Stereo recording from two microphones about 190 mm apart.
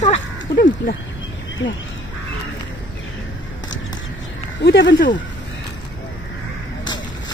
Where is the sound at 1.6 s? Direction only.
80° left.